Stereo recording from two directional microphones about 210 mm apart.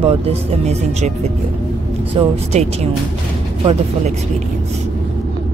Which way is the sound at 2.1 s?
30° right (ahead or behind).